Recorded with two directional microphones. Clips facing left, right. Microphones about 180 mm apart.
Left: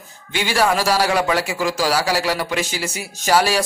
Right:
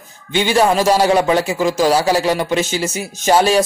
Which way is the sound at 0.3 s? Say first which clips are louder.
Right 5 dB; 20° right (ahead or behind).